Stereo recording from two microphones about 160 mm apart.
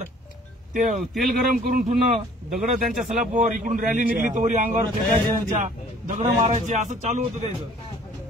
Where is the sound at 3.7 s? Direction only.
55° right (ahead or behind).